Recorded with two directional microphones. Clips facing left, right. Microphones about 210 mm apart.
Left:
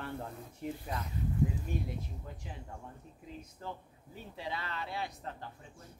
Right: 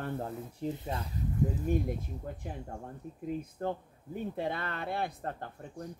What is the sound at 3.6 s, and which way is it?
Speech, 55° right (ahead or behind).